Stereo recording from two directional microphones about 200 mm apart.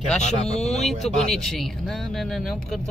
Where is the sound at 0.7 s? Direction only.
Centre (ahead or behind).